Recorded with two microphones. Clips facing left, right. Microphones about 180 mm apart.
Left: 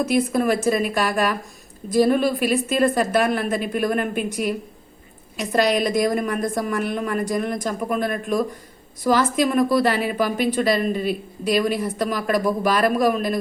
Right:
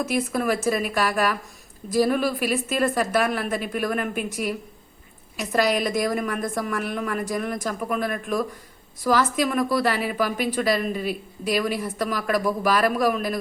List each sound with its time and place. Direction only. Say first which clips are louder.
0.0 s a woman's voice: left 4 dB; centre (ahead or behind)